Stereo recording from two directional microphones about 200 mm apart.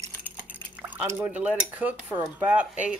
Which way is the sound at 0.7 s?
10° right (ahead or behind).